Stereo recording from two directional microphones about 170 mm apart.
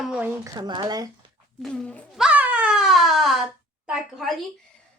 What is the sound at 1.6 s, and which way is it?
Speech, 5° left (ahead or behind).